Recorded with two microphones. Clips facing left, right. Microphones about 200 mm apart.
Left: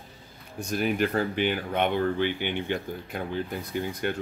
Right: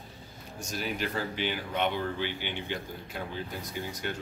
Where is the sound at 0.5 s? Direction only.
55° left (ahead or behind).